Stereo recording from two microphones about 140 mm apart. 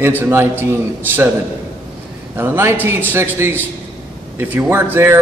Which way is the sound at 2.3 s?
15° right (ahead or behind).